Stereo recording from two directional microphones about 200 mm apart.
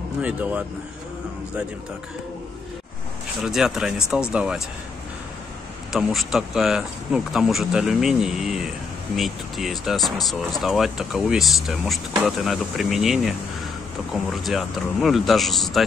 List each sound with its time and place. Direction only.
0.2 s speech: 5° right (ahead or behind)
3.4 s speech: 5° right (ahead or behind)
5.9 s speech: centre (ahead or behind)